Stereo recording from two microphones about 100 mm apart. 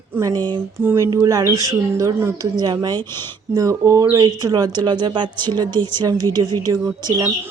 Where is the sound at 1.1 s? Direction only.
35° right (ahead or behind).